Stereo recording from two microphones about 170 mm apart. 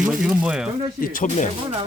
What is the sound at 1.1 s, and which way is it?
Speech, 50° left (ahead or behind).